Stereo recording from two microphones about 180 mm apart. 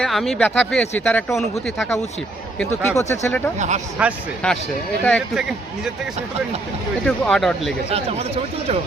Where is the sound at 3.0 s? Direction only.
15° left (ahead or behind).